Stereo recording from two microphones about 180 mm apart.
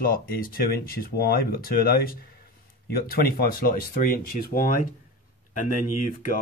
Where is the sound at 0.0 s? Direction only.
55° left (ahead or behind).